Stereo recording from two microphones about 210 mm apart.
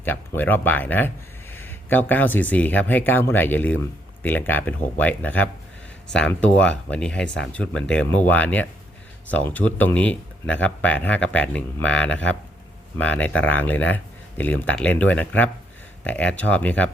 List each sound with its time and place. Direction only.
0.0 s speech: 10° left (ahead or behind)